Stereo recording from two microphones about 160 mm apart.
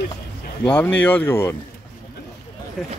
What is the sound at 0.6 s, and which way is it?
Speech, 10° left (ahead or behind).